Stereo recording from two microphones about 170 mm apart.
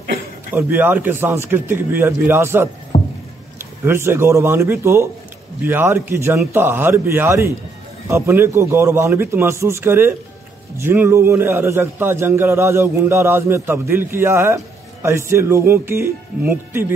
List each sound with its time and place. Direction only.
0.6 s a man's voice: 10° right (ahead or behind)
2.9 s a sound: 30° left (ahead or behind)
3.8 s a man's voice: 15° right (ahead or behind)